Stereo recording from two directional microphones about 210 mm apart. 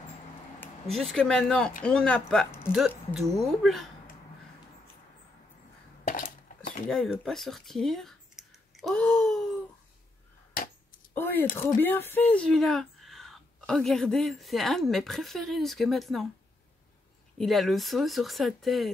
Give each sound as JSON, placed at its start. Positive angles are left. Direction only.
{"t": 0.6, "sound": "speech", "side_deg": 0}
{"t": 6.0, "sound": "a sound", "side_deg": 40}
{"t": 6.9, "sound": "speech", "side_deg": 5}
{"t": 11.1, "sound": "speech", "side_deg": 10}
{"t": 17.4, "sound": "speech", "side_deg": 0}